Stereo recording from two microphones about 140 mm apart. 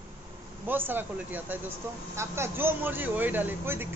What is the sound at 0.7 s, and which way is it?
Speech, 15° right (ahead or behind).